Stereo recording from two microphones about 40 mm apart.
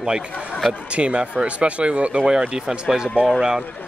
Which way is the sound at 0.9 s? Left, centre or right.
Right.